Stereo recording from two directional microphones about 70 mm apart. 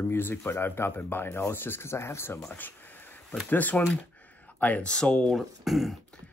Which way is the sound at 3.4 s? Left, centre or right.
Left.